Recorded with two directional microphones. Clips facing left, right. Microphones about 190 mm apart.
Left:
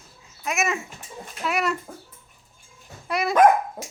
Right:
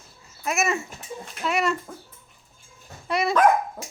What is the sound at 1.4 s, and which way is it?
Chicken, centre (ahead or behind).